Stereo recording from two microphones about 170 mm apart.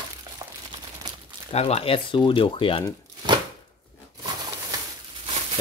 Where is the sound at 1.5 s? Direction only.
40° left (ahead or behind).